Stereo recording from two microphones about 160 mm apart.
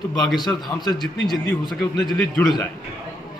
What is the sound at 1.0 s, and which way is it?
Speech, centre (ahead or behind).